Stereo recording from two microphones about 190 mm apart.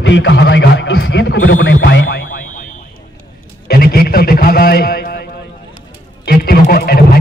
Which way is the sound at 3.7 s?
55° left (ahead or behind).